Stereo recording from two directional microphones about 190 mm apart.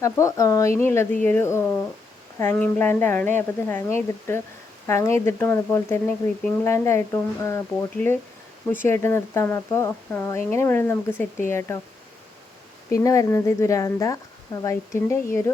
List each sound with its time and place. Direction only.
0.0 s speech: 15° left (ahead or behind)
12.9 s speech: 15° left (ahead or behind)